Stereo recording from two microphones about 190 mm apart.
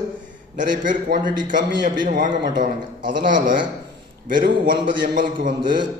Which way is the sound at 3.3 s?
45° right (ahead or behind).